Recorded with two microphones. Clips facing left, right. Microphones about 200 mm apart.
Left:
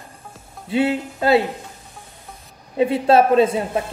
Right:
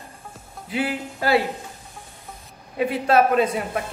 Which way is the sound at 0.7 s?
25° left (ahead or behind).